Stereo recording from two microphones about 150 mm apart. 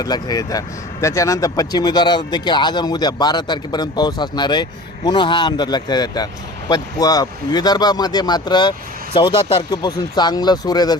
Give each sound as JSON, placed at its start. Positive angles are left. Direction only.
{"t": 0.0, "sound": "speech", "side_deg": 25}